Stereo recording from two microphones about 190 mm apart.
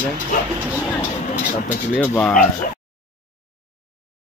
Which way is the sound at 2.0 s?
5° left (ahead or behind).